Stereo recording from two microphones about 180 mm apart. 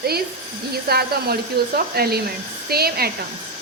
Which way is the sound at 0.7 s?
60° right (ahead or behind).